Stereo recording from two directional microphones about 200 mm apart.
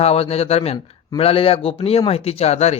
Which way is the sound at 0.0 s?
30° left (ahead or behind).